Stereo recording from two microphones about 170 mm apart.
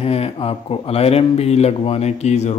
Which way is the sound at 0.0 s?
35° left (ahead or behind).